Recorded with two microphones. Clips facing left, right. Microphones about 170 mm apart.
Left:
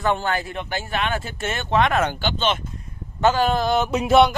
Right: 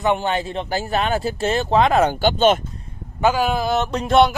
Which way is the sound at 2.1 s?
45° right (ahead or behind).